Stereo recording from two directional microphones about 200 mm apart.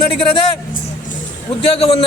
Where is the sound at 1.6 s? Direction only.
30° left (ahead or behind).